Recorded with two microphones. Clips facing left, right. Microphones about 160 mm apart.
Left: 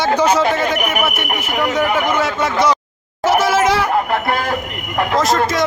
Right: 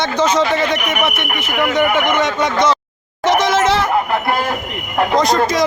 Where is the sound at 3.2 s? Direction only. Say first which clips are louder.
Even; 5° left (ahead or behind).